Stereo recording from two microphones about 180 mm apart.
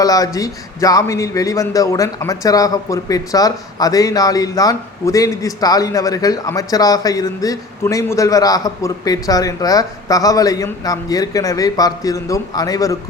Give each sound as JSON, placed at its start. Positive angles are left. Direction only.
{"t": 0.0, "sound": "speech", "side_deg": 20}